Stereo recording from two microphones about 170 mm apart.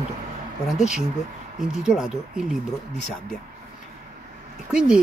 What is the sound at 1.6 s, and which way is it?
Speech, 5° right (ahead or behind).